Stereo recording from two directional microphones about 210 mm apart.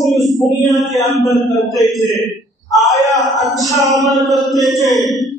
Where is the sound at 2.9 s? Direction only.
15° left (ahead or behind).